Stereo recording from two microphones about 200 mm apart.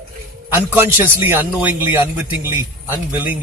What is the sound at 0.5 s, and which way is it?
A man's voice, 10° right (ahead or behind).